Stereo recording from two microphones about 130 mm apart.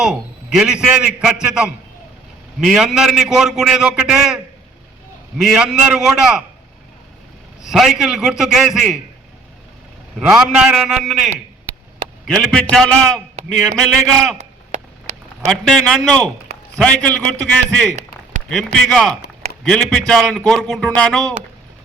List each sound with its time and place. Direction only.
0.0 s a man's voice: 5° right (ahead or behind)
5.4 s a man's voice: centre (ahead or behind)
7.7 s a man's voice: centre (ahead or behind)
10.2 s a man's voice: 5° right (ahead or behind)
14.3 s a sound: 70° right (ahead or behind)
15.4 s a man's voice: 5° left (ahead or behind)